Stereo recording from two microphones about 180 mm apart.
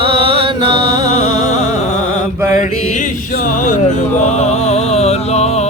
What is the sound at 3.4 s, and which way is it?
Music, 45° left (ahead or behind).